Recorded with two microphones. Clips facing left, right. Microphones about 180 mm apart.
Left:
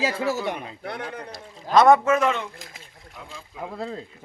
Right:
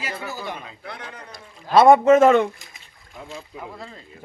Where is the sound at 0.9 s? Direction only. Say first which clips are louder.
Left 6 dB; 60° left (ahead or behind).